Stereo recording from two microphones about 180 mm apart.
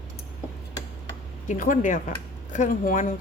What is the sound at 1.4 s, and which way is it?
Speech, 45° left (ahead or behind).